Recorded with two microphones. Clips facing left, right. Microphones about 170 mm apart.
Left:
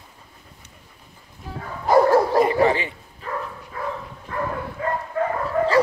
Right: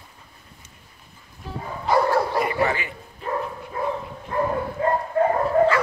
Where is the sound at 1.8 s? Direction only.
45° left (ahead or behind).